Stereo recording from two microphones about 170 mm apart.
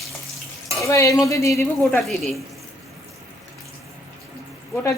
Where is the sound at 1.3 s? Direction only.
15° left (ahead or behind).